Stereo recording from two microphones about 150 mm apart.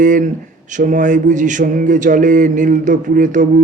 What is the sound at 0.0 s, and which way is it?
Speech, 60° right (ahead or behind).